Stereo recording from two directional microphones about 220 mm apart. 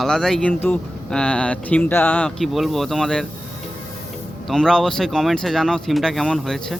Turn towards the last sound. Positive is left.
turn(degrees=0)  # may be behind; listen again after turning